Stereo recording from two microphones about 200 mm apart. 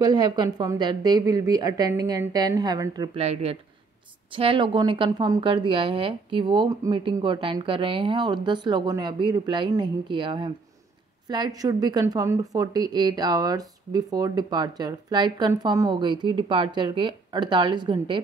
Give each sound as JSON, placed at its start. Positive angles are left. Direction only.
{"t": 0.0, "sound": "a woman's voice", "side_deg": -20}
{"t": 3.2, "sound": "a woman's voice", "side_deg": -30}